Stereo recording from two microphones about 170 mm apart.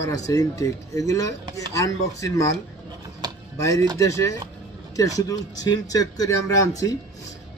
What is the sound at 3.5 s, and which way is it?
Speech, 20° left (ahead or behind).